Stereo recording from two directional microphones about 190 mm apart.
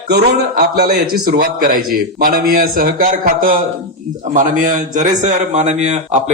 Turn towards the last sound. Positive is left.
turn(degrees=-35)  # may be behind; listen again after turning